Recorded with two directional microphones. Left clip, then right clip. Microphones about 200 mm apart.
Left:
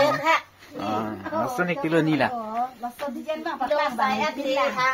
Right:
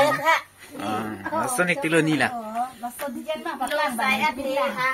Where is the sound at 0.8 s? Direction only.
Centre (ahead or behind).